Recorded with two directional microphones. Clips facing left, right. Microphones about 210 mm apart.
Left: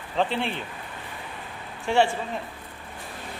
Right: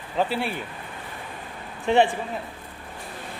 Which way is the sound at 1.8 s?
20° right (ahead or behind).